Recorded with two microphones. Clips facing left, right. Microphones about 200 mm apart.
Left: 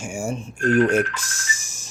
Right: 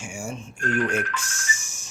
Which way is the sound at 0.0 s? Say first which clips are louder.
Left 6 dB; 40° left (ahead or behind).